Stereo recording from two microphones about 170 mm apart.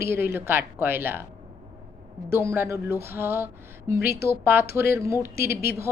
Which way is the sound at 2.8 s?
15° right (ahead or behind).